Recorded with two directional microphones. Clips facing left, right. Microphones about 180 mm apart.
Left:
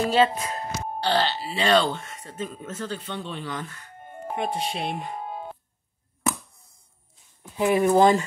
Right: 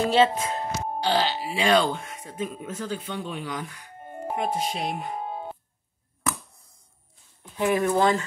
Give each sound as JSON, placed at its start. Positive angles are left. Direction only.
{"t": 0.1, "sound": "speech", "side_deg": -25}
{"t": 1.0, "sound": "speech", "side_deg": -10}
{"t": 7.5, "sound": "speech", "side_deg": 5}
{"t": 7.8, "sound": "speech", "side_deg": 20}